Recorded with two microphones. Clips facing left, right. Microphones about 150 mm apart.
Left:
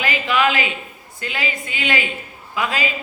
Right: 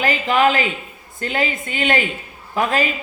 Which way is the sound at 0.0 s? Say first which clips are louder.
Right 3 dB; 40° right (ahead or behind).